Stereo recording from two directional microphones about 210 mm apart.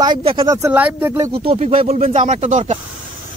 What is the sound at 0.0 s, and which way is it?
Speech, 20° right (ahead or behind).